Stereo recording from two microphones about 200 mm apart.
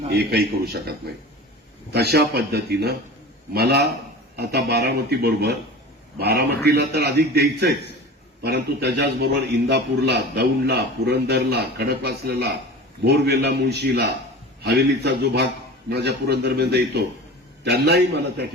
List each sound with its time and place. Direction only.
0.1 s a man's voice: 55° right (ahead or behind)